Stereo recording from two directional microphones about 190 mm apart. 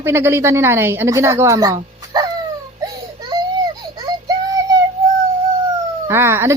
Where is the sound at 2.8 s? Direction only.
20° right (ahead or behind).